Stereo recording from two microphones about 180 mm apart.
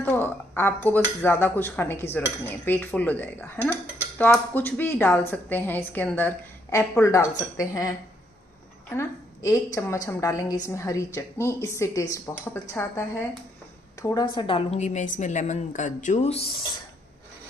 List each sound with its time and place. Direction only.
0.0 s a woman's voice: 10° left (ahead or behind)
14.0 s speech: 25° left (ahead or behind)